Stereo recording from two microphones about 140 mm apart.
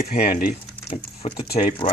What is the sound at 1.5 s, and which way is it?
Speech, 35° left (ahead or behind).